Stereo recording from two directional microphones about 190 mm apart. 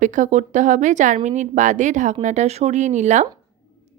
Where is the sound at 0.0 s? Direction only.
40° right (ahead or behind).